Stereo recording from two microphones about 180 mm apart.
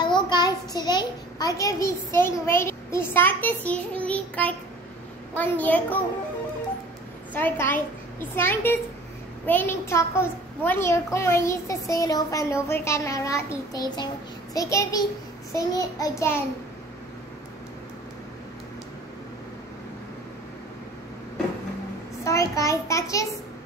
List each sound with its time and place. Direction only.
0.0 s a child's voice: 25° left (ahead or behind); by 5.9 s 10° left (ahead or behind)
7.3 s a child's voice: 10° left (ahead or behind)
13.7 s child singing: 25° left (ahead or behind)
15.5 s a child's voice: 20° left (ahead or behind)
22.2 s a child's voice: 15° left (ahead or behind)